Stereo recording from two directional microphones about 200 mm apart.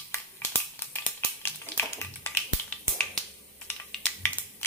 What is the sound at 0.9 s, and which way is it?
Tap, 10° left (ahead or behind).